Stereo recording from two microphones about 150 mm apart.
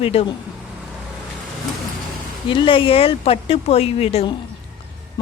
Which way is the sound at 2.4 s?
35° left (ahead or behind).